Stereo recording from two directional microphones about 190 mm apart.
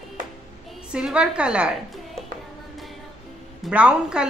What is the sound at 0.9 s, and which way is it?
Speech, 5° right (ahead or behind).